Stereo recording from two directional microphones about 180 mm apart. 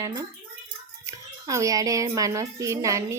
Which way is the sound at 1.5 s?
20° right (ahead or behind).